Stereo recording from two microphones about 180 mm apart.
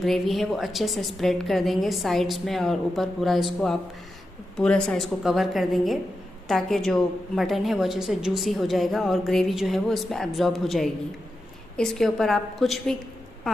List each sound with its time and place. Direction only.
0.0 s a woman's voice: centre (ahead or behind)